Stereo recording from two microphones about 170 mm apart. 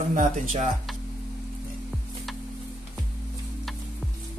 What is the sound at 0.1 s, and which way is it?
Speech, 50° right (ahead or behind).